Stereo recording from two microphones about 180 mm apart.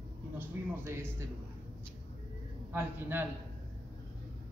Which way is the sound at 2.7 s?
10° right (ahead or behind).